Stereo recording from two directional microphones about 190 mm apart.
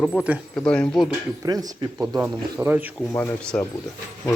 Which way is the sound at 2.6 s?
10° right (ahead or behind).